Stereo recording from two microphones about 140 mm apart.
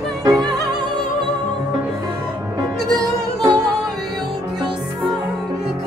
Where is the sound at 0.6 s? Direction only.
30° right (ahead or behind).